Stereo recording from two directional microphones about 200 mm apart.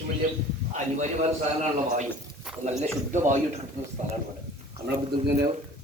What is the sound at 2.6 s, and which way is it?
Speech, 35° right (ahead or behind).